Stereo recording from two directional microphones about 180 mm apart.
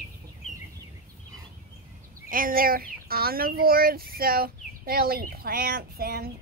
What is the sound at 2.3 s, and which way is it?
Speech, 50° right (ahead or behind).